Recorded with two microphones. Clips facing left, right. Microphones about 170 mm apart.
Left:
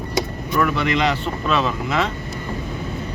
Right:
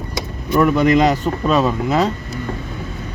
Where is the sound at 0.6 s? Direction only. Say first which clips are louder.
Right 7 dB; 40° right (ahead or behind).